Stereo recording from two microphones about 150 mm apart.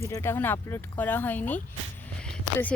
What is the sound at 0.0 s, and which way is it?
Speech, 15° left (ahead or behind).